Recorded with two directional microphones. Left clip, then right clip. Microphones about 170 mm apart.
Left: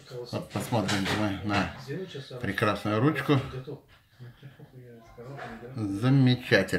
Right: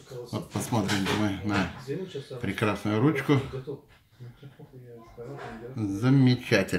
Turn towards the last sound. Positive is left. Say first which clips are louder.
# even
turn(degrees=0)  # may be behind; listen again after turning